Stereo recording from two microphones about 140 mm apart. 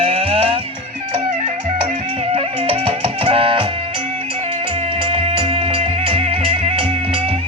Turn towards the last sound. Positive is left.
turn(degrees=-45)  # may be behind; listen again after turning